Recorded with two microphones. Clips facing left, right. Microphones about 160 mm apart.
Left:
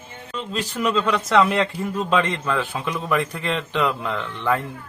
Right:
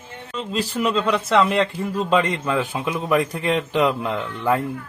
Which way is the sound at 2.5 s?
10° right (ahead or behind).